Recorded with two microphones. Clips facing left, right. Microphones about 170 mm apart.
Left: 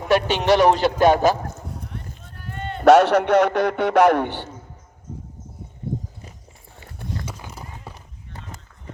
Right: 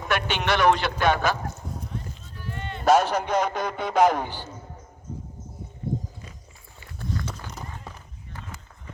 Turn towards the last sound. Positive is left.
turn(degrees=10)  # may be behind; listen again after turning